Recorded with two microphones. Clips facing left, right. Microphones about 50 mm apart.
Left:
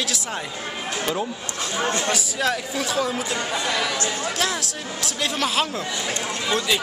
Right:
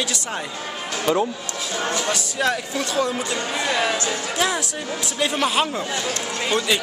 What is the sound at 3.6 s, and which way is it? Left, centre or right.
Speech, right.